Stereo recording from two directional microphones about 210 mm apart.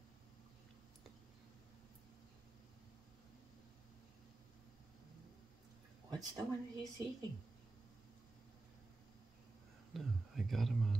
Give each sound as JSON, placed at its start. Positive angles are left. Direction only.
{"t": 6.0, "sound": "speech", "side_deg": -15}
{"t": 9.9, "sound": "speech", "side_deg": 0}